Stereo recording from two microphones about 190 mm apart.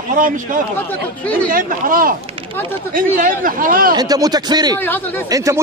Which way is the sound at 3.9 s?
20° right (ahead or behind).